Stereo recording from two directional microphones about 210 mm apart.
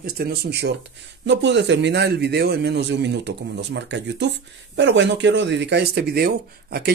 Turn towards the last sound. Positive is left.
turn(degrees=-50)  # may be behind; listen again after turning